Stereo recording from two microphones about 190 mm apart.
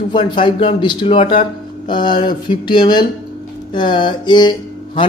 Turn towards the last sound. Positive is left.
turn(degrees=25)  # may be behind; listen again after turning